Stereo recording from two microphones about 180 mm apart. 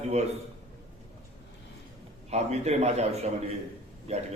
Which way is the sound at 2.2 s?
35° right (ahead or behind).